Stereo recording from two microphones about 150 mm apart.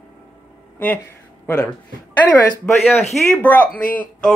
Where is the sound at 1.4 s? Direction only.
10° left (ahead or behind).